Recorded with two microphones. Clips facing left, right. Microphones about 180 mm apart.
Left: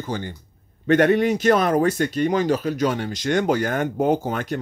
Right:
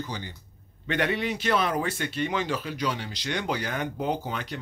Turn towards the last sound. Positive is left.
turn(degrees=45)  # may be behind; listen again after turning